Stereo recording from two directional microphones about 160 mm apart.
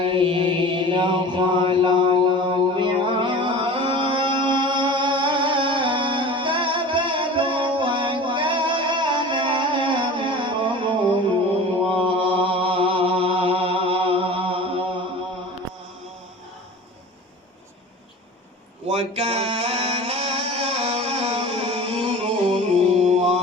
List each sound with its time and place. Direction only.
0.0 s mantra: 35° right (ahead or behind)
18.9 s music: 40° right (ahead or behind)